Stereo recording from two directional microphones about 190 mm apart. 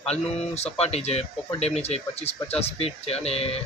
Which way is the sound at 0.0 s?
35° left (ahead or behind).